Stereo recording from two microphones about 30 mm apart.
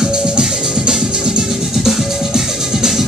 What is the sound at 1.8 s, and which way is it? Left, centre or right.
Music, centre.